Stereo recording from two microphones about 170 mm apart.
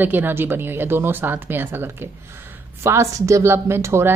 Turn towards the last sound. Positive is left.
turn(degrees=-15)  # may be behind; listen again after turning